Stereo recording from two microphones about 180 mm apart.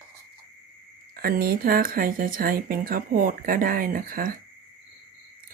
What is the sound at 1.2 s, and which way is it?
Speech, 55° right (ahead or behind).